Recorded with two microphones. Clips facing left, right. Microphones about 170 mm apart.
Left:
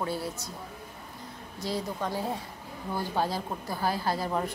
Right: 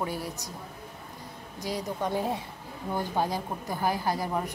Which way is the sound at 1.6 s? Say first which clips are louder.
Right 1 dB; 15° right (ahead or behind).